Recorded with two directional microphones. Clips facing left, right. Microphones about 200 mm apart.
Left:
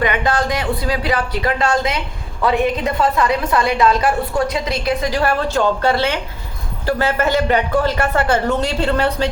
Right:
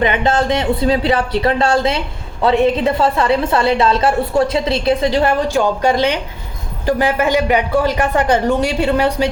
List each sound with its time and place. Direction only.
0.0 s a woman's voice: 25° right (ahead or behind)